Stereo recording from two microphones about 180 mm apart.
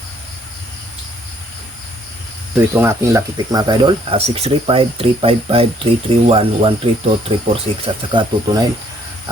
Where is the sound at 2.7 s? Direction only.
15° right (ahead or behind); by 7.3 s 30° right (ahead or behind).